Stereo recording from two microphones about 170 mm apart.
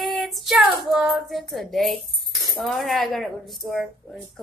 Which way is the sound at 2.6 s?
Centre (ahead or behind).